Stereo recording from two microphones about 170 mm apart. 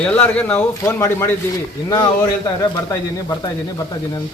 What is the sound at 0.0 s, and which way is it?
Speech, 10° left (ahead or behind).